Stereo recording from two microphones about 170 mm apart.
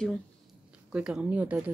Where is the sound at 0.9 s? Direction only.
5° right (ahead or behind).